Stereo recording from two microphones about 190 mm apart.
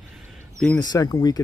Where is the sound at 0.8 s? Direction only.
20° left (ahead or behind).